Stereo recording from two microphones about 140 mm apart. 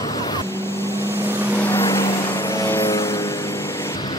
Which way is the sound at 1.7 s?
20° left (ahead or behind).